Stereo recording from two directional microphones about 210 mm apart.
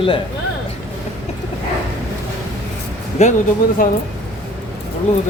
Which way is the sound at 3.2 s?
35° left (ahead or behind).